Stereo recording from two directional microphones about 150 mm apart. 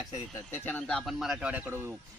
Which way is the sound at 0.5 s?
10° left (ahead or behind).